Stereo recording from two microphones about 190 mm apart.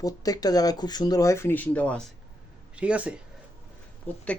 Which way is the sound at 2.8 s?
5° right (ahead or behind).